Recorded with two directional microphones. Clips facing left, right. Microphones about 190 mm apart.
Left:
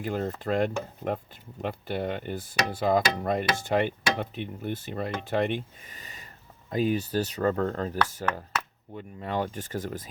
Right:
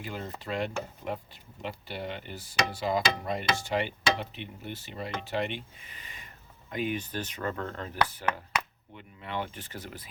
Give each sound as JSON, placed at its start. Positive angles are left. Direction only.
{"t": 0.0, "sound": "speech", "side_deg": 50}